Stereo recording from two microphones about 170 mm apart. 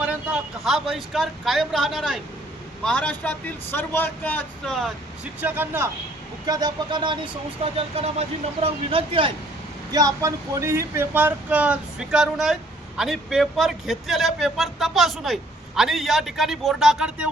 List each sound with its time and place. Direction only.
0.0 s speech: 5° right (ahead or behind)
5.4 s speech: 10° right (ahead or behind)
6.4 s speech: 25° right (ahead or behind)
9.9 s speech: 20° right (ahead or behind); by 17.2 s 5° right (ahead or behind)